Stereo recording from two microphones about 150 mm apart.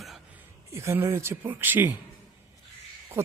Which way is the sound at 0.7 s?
20° right (ahead or behind).